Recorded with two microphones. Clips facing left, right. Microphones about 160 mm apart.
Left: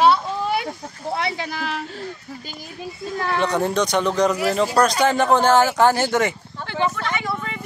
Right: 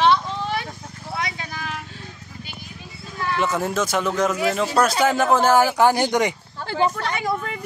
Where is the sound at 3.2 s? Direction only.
40° left (ahead or behind).